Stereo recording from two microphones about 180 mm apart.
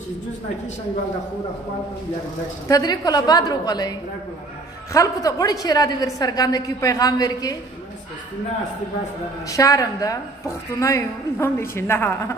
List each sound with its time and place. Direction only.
2.7 s a woman's voice: 20° left (ahead or behind)
4.9 s a woman's voice: 20° left (ahead or behind)
9.5 s a woman's voice: 20° left (ahead or behind)